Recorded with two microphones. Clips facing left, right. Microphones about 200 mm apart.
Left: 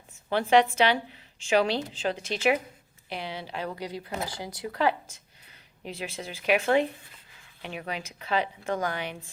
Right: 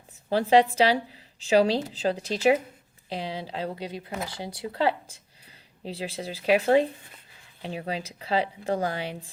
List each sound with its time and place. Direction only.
0.3 s a woman's voice: 35° right (ahead or behind)